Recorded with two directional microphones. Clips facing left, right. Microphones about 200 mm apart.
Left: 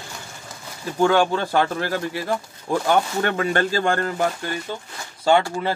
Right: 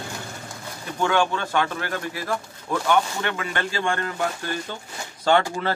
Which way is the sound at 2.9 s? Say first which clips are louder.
Left 2 dB; 40° left (ahead or behind).